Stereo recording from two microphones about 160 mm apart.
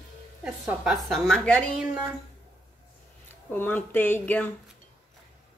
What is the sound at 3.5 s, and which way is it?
Speech, 10° left (ahead or behind).